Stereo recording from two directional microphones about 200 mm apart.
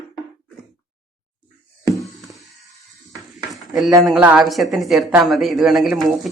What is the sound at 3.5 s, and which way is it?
Stir, centre (ahead or behind).